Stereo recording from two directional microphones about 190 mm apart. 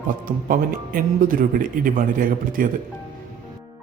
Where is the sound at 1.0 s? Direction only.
45° right (ahead or behind).